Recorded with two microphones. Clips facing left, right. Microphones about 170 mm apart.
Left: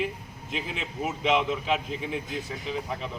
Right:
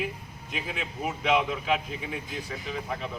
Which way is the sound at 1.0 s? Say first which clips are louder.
Even; 20° left (ahead or behind).